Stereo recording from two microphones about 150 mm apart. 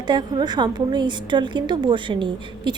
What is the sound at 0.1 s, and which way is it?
A woman's voice, 30° right (ahead or behind).